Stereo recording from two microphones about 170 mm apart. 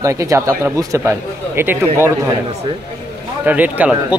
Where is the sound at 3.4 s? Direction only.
10° right (ahead or behind).